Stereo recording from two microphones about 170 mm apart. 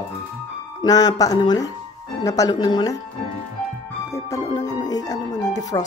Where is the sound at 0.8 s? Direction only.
20° left (ahead or behind).